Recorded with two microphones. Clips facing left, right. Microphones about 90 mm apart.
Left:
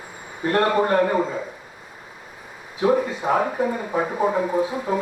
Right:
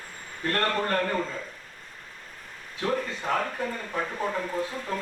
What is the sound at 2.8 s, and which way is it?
Speech, 10° left (ahead or behind).